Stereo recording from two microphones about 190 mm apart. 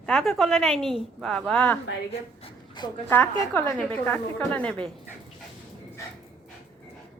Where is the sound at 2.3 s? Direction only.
25° left (ahead or behind).